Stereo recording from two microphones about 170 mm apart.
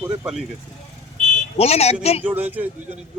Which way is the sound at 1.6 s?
40° left (ahead or behind).